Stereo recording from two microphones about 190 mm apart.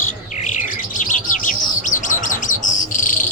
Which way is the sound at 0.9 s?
40° left (ahead or behind).